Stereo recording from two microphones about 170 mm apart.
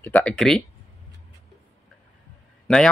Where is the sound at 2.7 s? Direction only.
5° left (ahead or behind).